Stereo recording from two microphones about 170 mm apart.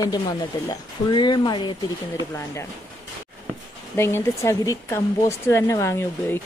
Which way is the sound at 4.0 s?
15° left (ahead or behind).